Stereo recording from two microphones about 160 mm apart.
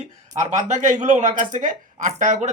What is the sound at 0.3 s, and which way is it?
Speech, 50° right (ahead or behind).